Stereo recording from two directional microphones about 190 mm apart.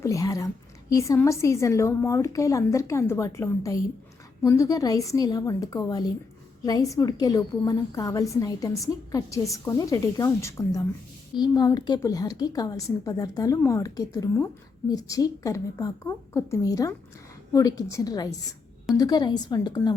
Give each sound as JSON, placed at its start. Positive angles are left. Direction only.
{"t": 0.0, "sound": "a woman's voice", "side_deg": 15}